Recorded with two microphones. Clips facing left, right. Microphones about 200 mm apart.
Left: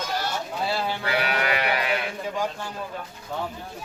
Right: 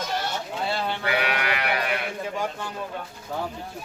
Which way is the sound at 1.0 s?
35° left (ahead or behind).